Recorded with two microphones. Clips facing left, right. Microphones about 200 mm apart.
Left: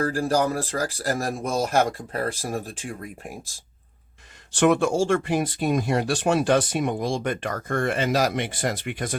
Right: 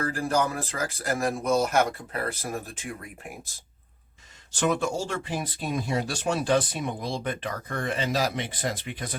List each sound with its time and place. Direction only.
0.0 s speech: 35° left (ahead or behind)
4.6 s speech: 70° left (ahead or behind)
5.4 s speech: 65° left (ahead or behind); by 7.9 s 45° left (ahead or behind)
8.1 s speech: 70° left (ahead or behind)